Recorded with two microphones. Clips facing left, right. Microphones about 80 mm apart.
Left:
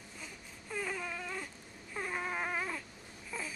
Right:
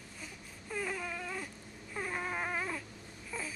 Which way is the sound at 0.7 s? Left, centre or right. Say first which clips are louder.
Right 1 dB; centre.